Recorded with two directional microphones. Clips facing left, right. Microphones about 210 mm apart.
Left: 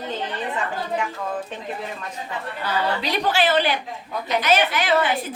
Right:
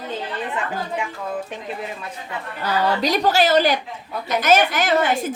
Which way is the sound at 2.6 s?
40° right (ahead or behind).